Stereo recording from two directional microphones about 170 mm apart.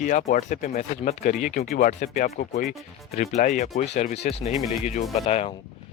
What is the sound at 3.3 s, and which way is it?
Speech, 45° left (ahead or behind).